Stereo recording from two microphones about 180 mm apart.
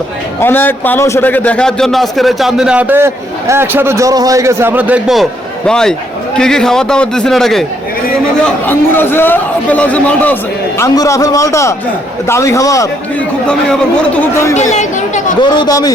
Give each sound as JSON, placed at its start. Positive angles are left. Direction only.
{"t": 0.3, "sound": "a man's voice", "side_deg": 10}
{"t": 8.6, "sound": "a man's voice", "side_deg": 10}
{"t": 14.5, "sound": "speech", "side_deg": 40}
{"t": 15.4, "sound": "a man's voice", "side_deg": 25}